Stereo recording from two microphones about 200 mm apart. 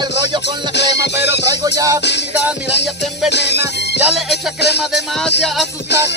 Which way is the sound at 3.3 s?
60° left (ahead or behind).